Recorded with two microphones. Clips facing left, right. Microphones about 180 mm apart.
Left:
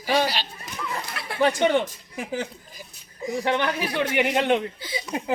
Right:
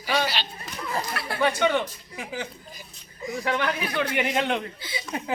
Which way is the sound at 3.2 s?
30° left (ahead or behind).